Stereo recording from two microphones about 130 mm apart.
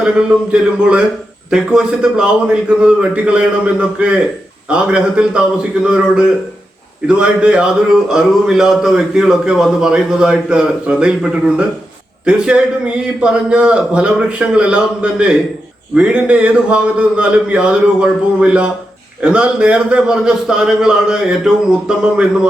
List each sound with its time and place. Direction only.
0.0 s a man's voice: 10° right (ahead or behind)